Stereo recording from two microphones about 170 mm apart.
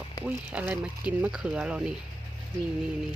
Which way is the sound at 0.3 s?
10° right (ahead or behind).